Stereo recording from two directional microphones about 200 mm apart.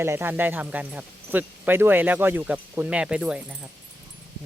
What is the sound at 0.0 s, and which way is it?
Speech, 10° right (ahead or behind).